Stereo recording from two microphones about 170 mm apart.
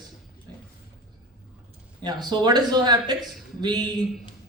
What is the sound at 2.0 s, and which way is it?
A man's voice, 25° right (ahead or behind).